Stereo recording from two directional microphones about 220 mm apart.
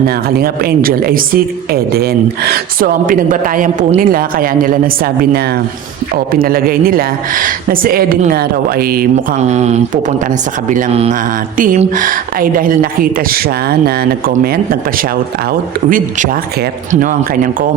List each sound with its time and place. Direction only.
0.3 s speech: 45° right (ahead or behind)
6.3 s speech: 40° right (ahead or behind)
15.9 s speech: 35° right (ahead or behind)